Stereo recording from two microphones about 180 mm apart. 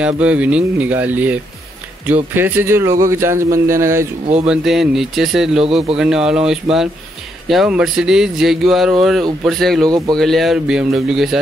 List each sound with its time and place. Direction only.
0.0 s speech: 10° right (ahead or behind)
4.5 s speech: centre (ahead or behind)
9.8 s speech: 20° right (ahead or behind)
10.1 s speech: centre (ahead or behind)